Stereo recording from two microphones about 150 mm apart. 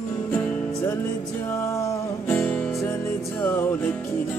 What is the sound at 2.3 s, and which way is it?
Music, 10° left (ahead or behind).